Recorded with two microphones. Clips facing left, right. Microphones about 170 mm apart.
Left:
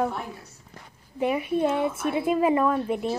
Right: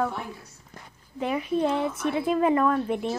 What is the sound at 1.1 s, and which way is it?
A woman's voice, 10° left (ahead or behind).